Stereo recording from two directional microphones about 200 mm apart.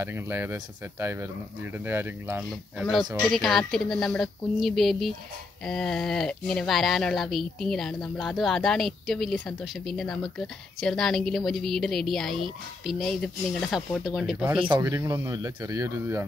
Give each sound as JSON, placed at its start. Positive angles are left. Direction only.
{"t": 0.0, "sound": "speech", "side_deg": -10}
{"t": 14.6, "sound": "speech", "side_deg": -20}